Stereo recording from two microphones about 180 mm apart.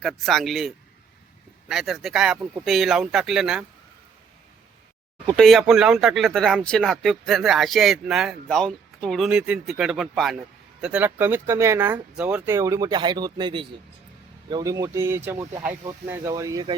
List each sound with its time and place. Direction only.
0.0 s speech: centre (ahead or behind)
5.4 s speech: centre (ahead or behind); by 16.7 s 20° right (ahead or behind)